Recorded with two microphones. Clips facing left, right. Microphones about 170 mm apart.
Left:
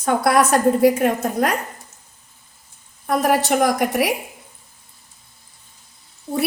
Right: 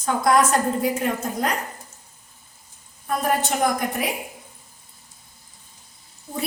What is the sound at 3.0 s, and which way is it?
A woman's voice, 70° left (ahead or behind).